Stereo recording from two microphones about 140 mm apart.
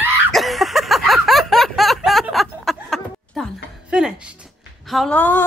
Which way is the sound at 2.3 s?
Centre (ahead or behind).